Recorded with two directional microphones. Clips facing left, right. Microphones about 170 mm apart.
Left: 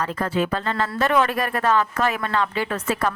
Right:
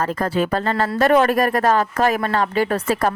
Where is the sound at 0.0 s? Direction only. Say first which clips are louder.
Right 3 dB; 40° right (ahead or behind).